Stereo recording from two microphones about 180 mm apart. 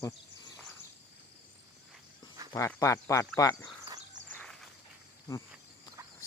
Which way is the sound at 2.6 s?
15° left (ahead or behind).